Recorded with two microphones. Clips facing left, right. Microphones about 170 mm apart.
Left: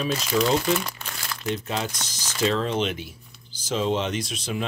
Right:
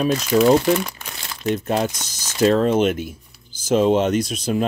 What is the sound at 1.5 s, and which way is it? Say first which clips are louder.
Speech: right 8 dB; 50° right (ahead or behind).